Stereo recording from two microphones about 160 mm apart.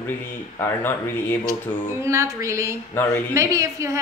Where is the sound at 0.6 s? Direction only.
15° left (ahead or behind).